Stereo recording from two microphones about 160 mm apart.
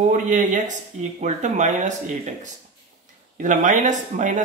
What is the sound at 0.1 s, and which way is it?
Speech, 50° right (ahead or behind).